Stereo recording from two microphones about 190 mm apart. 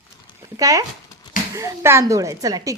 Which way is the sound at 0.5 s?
20° right (ahead or behind).